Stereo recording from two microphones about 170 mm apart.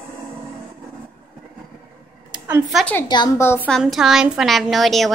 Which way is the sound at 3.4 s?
15° left (ahead or behind).